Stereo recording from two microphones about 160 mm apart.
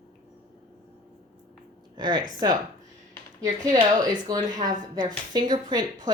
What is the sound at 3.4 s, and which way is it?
Speech, 25° right (ahead or behind).